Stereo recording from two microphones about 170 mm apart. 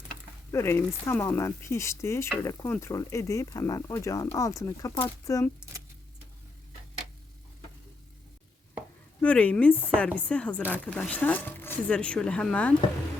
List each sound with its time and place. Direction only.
0.5 s speech: 15° left (ahead or behind)
9.2 s speech: 5° left (ahead or behind)